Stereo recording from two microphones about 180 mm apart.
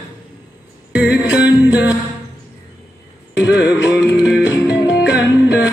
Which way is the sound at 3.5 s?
75° left (ahead or behind).